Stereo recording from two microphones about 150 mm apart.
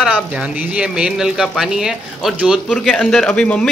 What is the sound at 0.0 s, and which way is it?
Speech, 5° right (ahead or behind).